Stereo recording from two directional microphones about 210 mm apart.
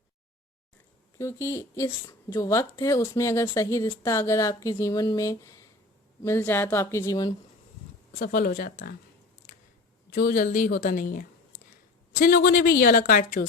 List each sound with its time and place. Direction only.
1.2 s speech: 15° left (ahead or behind)
8.2 s speech: 40° left (ahead or behind)
10.1 s a woman's voice: 45° left (ahead or behind)